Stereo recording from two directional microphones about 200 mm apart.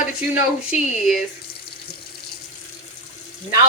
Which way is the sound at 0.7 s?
Centre (ahead or behind).